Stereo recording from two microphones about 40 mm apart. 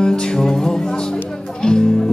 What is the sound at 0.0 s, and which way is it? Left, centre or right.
Music, centre.